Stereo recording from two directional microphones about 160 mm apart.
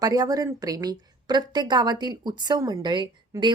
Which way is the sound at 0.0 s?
20° right (ahead or behind).